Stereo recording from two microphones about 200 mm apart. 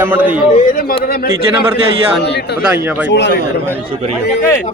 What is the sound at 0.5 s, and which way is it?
A man's voice, 45° left (ahead or behind).